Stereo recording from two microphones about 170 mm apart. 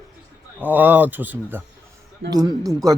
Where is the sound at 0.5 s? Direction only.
10° right (ahead or behind).